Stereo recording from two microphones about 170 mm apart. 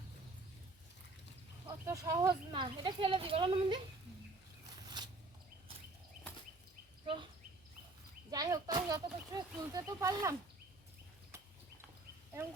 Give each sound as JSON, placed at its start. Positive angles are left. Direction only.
{"t": 1.6, "sound": "speech", "side_deg": -20}
{"t": 7.0, "sound": "bird", "side_deg": -30}
{"t": 8.3, "sound": "speech", "side_deg": -20}